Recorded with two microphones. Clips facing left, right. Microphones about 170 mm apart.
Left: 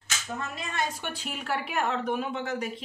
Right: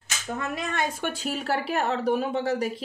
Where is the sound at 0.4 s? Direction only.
60° right (ahead or behind).